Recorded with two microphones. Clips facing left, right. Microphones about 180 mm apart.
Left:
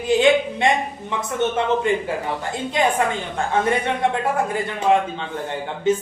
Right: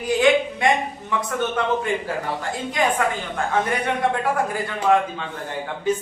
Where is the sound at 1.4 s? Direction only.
25° left (ahead or behind).